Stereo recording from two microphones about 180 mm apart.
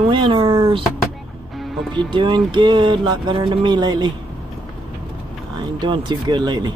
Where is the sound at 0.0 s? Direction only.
25° right (ahead or behind).